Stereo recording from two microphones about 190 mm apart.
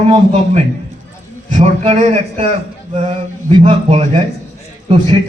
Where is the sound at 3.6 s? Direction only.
35° right (ahead or behind).